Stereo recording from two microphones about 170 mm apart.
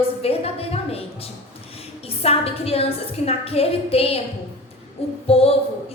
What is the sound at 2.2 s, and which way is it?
A woman's voice, 35° left (ahead or behind).